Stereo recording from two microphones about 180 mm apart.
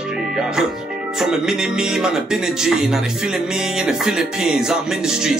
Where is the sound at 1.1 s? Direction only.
Centre (ahead or behind).